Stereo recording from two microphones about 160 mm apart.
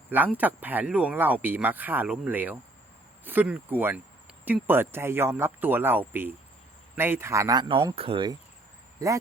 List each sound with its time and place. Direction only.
0.3 s speech: 10° right (ahead or behind); by 8.4 s 30° right (ahead or behind)
9.0 s speech: 20° right (ahead or behind)